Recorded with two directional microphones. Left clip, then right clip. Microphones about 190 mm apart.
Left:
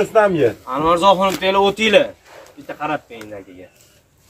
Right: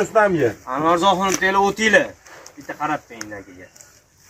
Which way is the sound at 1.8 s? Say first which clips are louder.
Left 2 dB; 10° left (ahead or behind).